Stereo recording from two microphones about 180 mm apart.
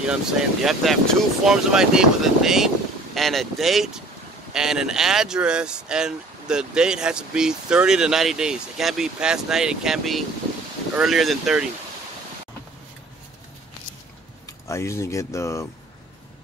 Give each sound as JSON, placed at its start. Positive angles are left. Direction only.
{"t": 0.1, "sound": "speech", "side_deg": -5}
{"t": 14.4, "sound": "speech", "side_deg": 15}